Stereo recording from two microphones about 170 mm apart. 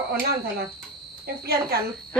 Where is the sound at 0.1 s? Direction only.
65° right (ahead or behind).